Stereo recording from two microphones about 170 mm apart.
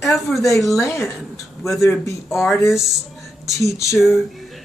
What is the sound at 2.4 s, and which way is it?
Speech, 15° left (ahead or behind).